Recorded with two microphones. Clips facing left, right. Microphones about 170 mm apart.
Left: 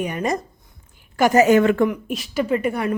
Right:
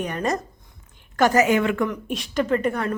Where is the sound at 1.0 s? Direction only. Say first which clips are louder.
Left 1 dB; 10° left (ahead or behind).